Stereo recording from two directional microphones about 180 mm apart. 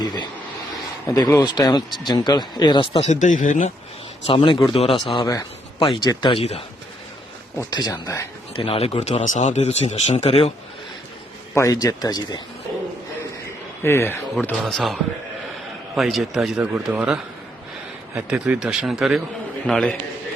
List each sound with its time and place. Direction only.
0.0 s a sound: 25° left (ahead or behind)
1.0 s speech: 15° left (ahead or behind); by 3.7 s 45° left (ahead or behind)
4.3 s speech: 30° left (ahead or behind)
7.7 s speech: 20° left (ahead or behind)
8.5 s speech: 30° left (ahead or behind)
11.5 s speech: 15° left (ahead or behind)
13.8 s speech: 15° left (ahead or behind)
14.3 s speech: centre (ahead or behind)
16.0 s speech: centre (ahead or behind)
18.3 s speech: 5° right (ahead or behind)